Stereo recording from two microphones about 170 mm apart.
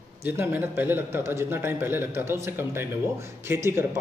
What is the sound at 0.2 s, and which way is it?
Speech, 10° right (ahead or behind).